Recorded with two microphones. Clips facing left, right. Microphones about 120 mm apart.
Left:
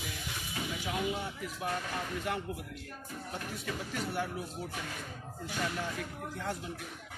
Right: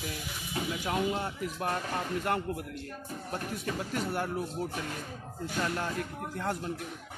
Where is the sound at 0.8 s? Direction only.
60° right (ahead or behind).